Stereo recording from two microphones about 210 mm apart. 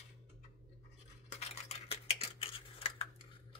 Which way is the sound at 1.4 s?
30° left (ahead or behind).